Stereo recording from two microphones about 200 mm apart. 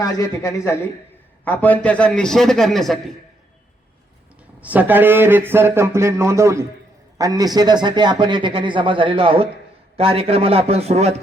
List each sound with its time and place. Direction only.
0.0 s a man's voice: 15° left (ahead or behind)
4.6 s a man's voice: 10° right (ahead or behind); by 11.1 s 30° right (ahead or behind)